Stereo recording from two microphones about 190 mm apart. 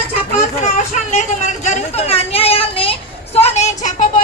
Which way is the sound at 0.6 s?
40° left (ahead or behind).